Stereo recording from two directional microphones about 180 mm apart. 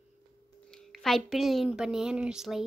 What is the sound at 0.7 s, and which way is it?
A woman's voice, 5° left (ahead or behind).